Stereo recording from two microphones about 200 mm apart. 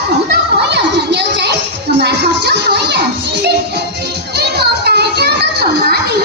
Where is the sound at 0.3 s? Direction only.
55° right (ahead or behind).